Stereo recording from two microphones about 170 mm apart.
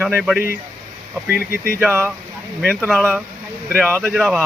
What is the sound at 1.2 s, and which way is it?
Speech, 65° left (ahead or behind).